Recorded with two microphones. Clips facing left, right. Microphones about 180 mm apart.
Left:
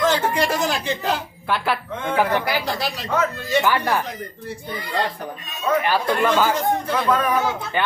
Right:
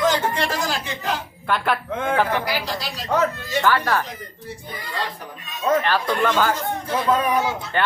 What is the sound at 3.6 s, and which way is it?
Speech, 15° left (ahead or behind).